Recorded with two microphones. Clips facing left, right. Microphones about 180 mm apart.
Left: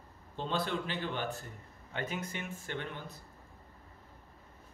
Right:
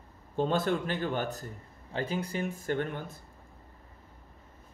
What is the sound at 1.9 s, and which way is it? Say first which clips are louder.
Speech: right 6 dB; 30° right (ahead or behind).